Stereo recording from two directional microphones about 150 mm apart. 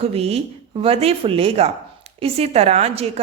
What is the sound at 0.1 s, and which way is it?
A woman's voice, 40° right (ahead or behind).